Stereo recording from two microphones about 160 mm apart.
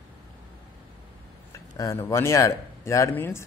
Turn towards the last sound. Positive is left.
turn(degrees=15)  # may be behind; listen again after turning